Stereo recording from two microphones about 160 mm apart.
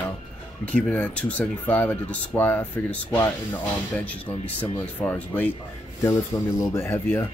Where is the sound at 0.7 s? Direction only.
10° left (ahead or behind).